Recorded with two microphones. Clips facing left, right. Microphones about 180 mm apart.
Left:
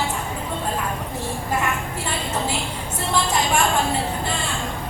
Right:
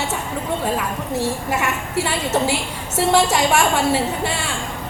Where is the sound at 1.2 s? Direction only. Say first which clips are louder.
Right 4 dB; 80° right.